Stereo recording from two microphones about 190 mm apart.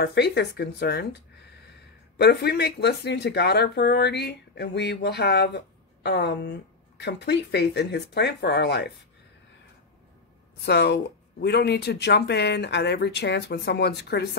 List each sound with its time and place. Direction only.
0.0 s speech: 60° left (ahead or behind)
2.1 s speech: 60° left (ahead or behind)
10.6 s speech: 60° left (ahead or behind)